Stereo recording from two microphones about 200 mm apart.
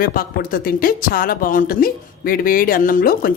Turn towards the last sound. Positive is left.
turn(degrees=45)  # may be behind; listen again after turning